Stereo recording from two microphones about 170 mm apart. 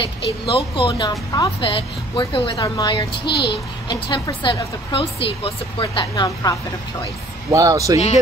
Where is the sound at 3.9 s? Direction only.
30° left (ahead or behind).